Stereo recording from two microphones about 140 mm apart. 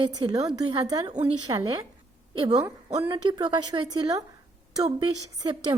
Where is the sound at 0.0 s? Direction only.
25° right (ahead or behind).